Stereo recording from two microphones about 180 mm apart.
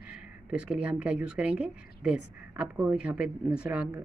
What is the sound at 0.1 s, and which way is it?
Speech, 5° right (ahead or behind).